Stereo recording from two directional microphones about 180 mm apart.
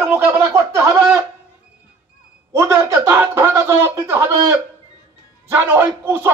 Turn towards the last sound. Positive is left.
turn(degrees=-10)  # may be behind; listen again after turning